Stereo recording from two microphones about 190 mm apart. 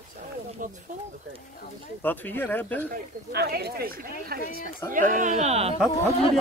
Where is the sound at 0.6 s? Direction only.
45° right (ahead or behind).